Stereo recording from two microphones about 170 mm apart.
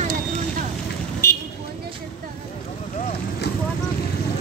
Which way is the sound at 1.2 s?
15° left (ahead or behind).